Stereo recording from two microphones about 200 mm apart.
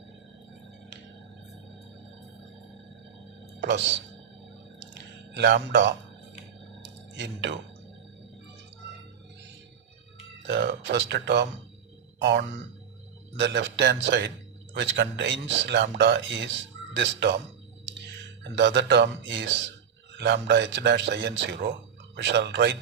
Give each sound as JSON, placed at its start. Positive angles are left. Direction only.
{"t": 3.6, "sound": "a man's voice", "side_deg": -60}
{"t": 4.8, "sound": "a sound", "side_deg": -60}
{"t": 10.4, "sound": "a man's voice", "side_deg": -60}
{"t": 18.4, "sound": "a man's voice", "side_deg": -60}